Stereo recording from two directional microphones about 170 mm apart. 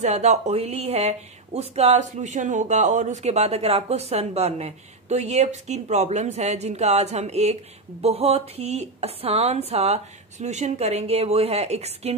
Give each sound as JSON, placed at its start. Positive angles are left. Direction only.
{"t": 0.0, "sound": "speech", "side_deg": -40}